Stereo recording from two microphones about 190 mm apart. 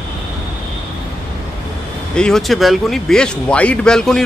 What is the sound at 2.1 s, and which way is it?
A man's voice, 5° left (ahead or behind).